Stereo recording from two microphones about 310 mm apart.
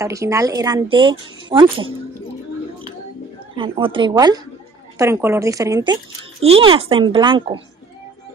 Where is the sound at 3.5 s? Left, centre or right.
Centre.